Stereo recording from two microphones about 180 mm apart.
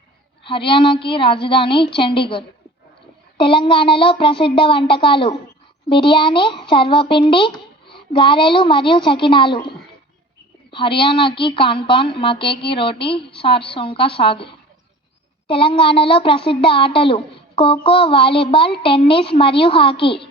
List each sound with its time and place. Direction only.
0.4 s a child's voice: 30° left (ahead or behind)